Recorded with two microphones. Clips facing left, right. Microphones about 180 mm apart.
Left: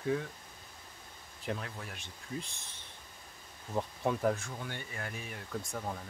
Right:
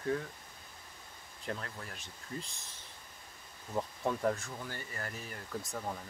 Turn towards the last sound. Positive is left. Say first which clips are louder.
# left 1 dB
turn(degrees=0)  # may be behind; listen again after turning